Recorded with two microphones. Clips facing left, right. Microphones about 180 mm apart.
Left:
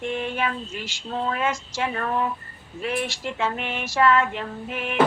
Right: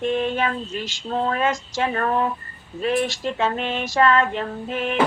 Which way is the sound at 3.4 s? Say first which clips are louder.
Right 3 dB; 70° right (ahead or behind).